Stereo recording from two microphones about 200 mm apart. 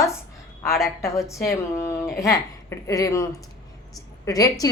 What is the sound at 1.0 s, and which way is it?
A woman's voice, 15° left (ahead or behind).